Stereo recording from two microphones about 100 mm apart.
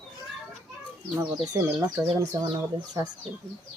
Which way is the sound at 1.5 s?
35° right (ahead or behind).